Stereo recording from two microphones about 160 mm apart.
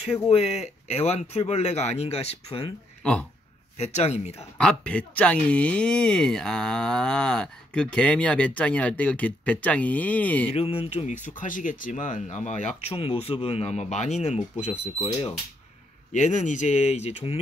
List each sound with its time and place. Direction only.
0.3 s speech: 40° left (ahead or behind)
3.0 s speech: 5° left (ahead or behind)
3.7 s speech: 45° left (ahead or behind)
4.6 s speech: 5° left (ahead or behind)
10.5 s speech: 35° left (ahead or behind)
16.1 s speech: 50° left (ahead or behind)